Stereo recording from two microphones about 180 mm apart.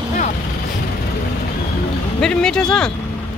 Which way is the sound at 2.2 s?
5° left (ahead or behind).